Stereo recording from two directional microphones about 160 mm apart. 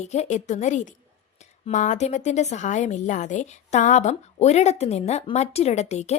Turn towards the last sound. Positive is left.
turn(degrees=45)  # may be behind; listen again after turning